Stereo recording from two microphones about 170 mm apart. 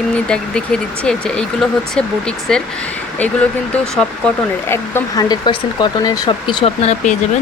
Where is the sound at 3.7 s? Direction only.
5° left (ahead or behind); by 7.1 s 40° left (ahead or behind).